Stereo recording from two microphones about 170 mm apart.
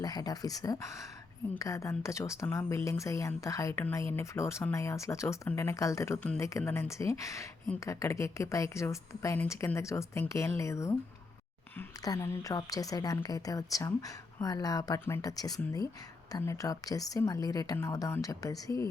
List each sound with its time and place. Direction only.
0.0 s a woman's voice: 20° left (ahead or behind)